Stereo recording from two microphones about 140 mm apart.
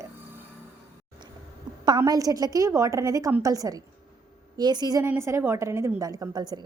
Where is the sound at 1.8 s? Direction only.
30° right (ahead or behind).